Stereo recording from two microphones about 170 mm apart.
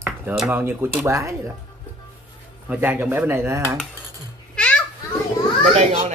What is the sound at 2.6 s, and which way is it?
Speech, 10° right (ahead or behind).